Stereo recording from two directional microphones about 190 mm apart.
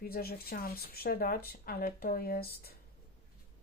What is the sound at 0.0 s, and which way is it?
Speech, 55° left (ahead or behind).